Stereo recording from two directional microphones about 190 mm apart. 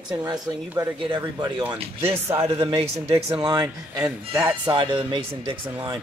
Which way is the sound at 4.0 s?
10° right (ahead or behind).